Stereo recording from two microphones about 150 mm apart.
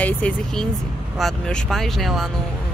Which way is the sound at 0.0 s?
10° left (ahead or behind).